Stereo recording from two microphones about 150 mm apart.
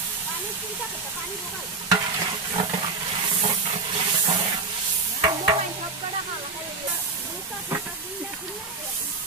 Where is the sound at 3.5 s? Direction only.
35° right (ahead or behind).